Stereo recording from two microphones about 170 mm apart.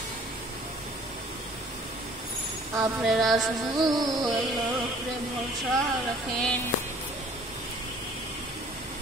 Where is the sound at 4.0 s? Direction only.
25° right (ahead or behind).